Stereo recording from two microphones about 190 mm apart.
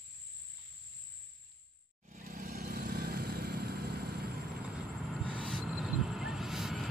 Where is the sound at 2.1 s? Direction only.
45° right (ahead or behind).